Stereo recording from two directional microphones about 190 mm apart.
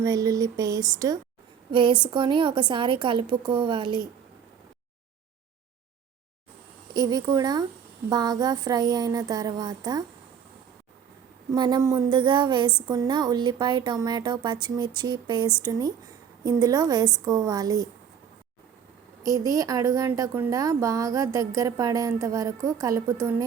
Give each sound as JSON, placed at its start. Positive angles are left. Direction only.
{"t": 0.0, "sound": "a woman's voice", "side_deg": -20}
{"t": 6.9, "sound": "a woman's voice", "side_deg": -20}
{"t": 11.5, "sound": "a woman's voice", "side_deg": -20}
{"t": 19.2, "sound": "a woman's voice", "side_deg": -15}